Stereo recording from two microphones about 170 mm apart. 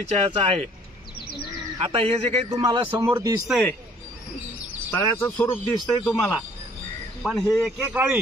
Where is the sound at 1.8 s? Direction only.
35° right (ahead or behind).